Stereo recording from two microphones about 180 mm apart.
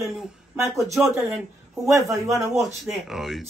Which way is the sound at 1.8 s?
15° right (ahead or behind).